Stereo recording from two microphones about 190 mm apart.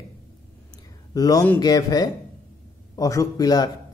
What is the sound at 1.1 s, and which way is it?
Speech, 20° left (ahead or behind).